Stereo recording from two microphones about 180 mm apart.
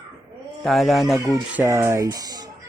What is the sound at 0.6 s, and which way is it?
Speech, centre (ahead or behind).